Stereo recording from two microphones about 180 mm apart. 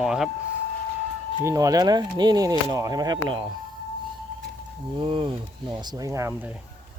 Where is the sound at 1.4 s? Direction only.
20° right (ahead or behind).